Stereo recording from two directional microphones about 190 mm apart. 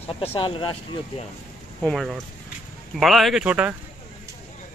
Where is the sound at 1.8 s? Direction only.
Centre (ahead or behind).